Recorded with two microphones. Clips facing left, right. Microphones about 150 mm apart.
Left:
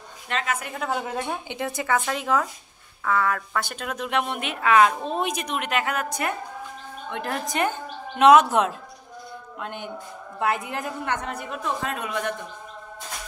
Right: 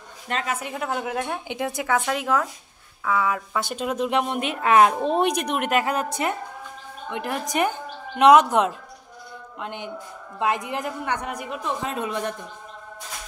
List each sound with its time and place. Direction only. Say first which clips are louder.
0.3 s a woman's voice: even; 40° right (ahead or behind)
0.7 s a woman's voice: right 2 dB; 5° right (ahead or behind)
3.6 s a woman's voice: right 6 dB; 25° right (ahead or behind)
5.0 s a woman's voice: right 5 dB; 65° right (ahead or behind); by 6.3 s 30° right (ahead or behind)
7.1 s a woman's voice: right 1 dB; 15° right (ahead or behind); by 12.4 s 30° right (ahead or behind)